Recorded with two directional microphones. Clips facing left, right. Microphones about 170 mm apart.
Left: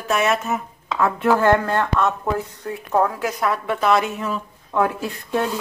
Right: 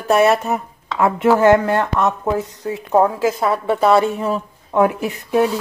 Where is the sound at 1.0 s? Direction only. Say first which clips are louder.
Right 4 dB; 20° right (ahead or behind).